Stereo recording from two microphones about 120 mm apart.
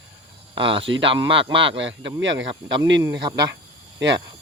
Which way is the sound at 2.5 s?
35° right (ahead or behind).